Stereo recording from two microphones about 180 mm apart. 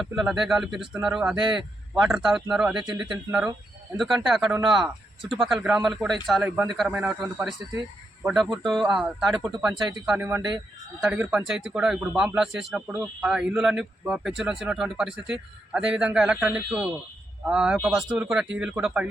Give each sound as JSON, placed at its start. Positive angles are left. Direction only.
{"t": 0.0, "sound": "speech", "side_deg": 0}
{"t": 8.8, "sound": "speech", "side_deg": 0}